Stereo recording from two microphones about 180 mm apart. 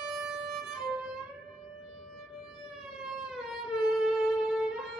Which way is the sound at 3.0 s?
Centre (ahead or behind).